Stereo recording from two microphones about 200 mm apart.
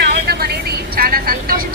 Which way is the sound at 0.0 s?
55° right (ahead or behind).